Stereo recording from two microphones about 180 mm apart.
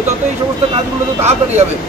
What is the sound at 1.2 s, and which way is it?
Speech, 40° right (ahead or behind).